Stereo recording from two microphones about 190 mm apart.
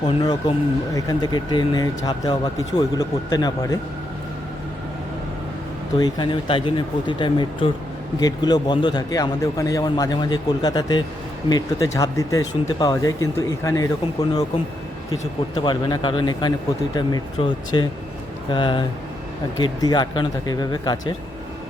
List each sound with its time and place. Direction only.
0.0 s speech: 25° left (ahead or behind)
6.0 s speech: 25° left (ahead or behind)
15.5 s speech: 25° left (ahead or behind)